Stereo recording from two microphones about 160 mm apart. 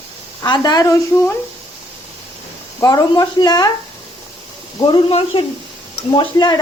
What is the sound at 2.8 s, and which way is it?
Speech, 25° left (ahead or behind).